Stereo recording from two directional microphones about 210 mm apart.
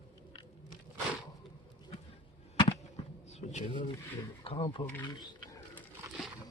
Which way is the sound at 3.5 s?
30° left (ahead or behind).